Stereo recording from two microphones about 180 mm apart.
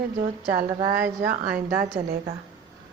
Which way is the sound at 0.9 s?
55° right (ahead or behind).